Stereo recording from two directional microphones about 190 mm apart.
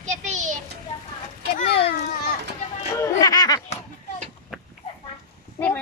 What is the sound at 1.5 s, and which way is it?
Speech, 55° left (ahead or behind).